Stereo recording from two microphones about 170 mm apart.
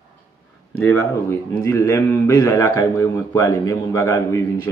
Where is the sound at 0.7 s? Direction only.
10° left (ahead or behind).